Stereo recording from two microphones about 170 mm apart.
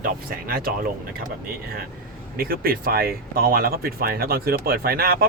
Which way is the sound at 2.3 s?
60° right (ahead or behind).